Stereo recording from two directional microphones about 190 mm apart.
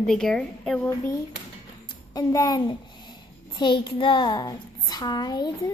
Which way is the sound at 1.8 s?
20° left (ahead or behind).